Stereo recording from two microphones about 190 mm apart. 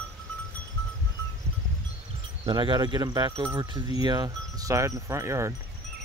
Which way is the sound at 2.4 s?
25° right (ahead or behind).